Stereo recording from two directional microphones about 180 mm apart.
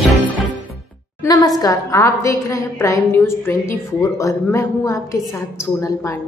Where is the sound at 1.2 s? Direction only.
20° left (ahead or behind).